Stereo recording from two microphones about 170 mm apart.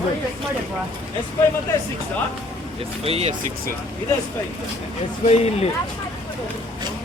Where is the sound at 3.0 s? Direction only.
35° right (ahead or behind).